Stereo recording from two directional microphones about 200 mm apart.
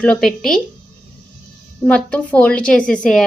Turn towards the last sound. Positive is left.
turn(degrees=5)  # may be behind; listen again after turning